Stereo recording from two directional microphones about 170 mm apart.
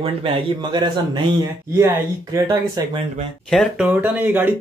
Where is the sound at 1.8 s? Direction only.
15° right (ahead or behind).